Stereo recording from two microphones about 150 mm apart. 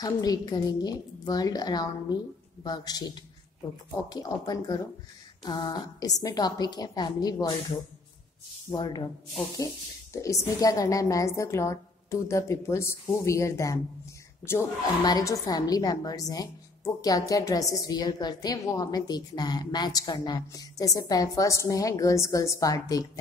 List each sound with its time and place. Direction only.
0.0 s a woman's voice: 25° left (ahead or behind)
8.7 s a woman's voice: 30° left (ahead or behind)